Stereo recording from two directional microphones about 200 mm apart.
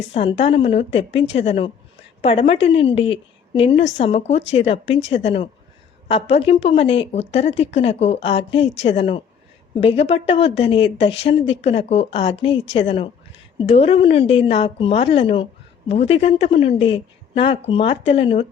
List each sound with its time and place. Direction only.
0.1 s a woman's voice: 30° left (ahead or behind)